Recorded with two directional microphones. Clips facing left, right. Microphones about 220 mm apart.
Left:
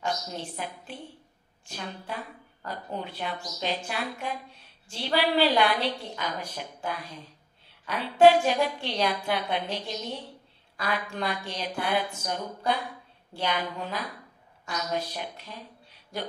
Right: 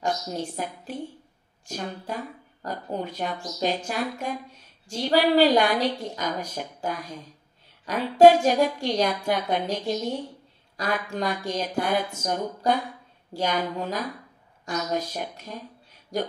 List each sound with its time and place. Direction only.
0.0 s a woman's voice: 45° right (ahead or behind)